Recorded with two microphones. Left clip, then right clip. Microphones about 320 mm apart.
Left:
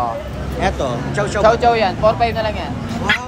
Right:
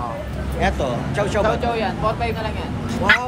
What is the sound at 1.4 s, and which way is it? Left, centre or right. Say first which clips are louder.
Speech: left 8 dB; left.